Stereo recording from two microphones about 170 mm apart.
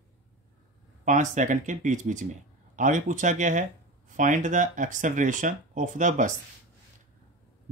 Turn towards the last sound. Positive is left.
turn(degrees=-50)  # may be behind; listen again after turning